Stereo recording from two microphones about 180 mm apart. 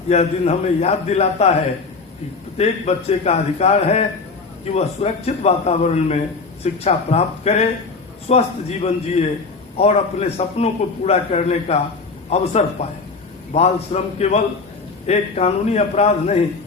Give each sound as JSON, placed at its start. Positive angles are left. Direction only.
{"t": 0.1, "sound": "a man's voice", "side_deg": 35}
{"t": 2.6, "sound": "a man's voice", "side_deg": 35}